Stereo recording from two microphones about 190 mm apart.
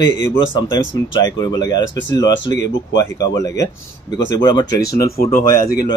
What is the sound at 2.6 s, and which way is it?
Speech, 70° left (ahead or behind).